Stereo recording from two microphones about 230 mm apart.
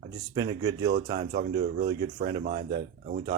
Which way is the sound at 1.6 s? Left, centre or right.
Right.